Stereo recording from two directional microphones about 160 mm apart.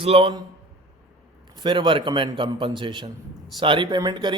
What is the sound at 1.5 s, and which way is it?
A man's voice, 30° right (ahead or behind).